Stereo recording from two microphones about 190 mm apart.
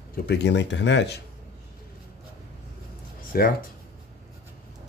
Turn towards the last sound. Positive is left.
turn(degrees=50)  # may be behind; listen again after turning